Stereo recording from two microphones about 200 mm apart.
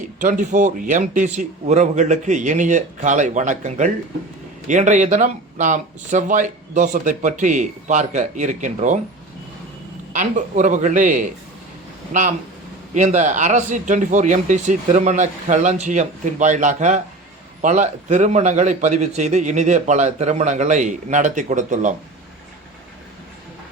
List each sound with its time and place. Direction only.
0.2 s a man's voice: 40° right (ahead or behind)
10.1 s a man's voice: 40° right (ahead or behind)